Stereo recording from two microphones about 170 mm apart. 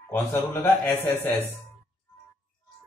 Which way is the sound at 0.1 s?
15° left (ahead or behind).